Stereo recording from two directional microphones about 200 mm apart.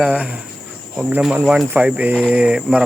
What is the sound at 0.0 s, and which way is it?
Speech, 5° right (ahead or behind).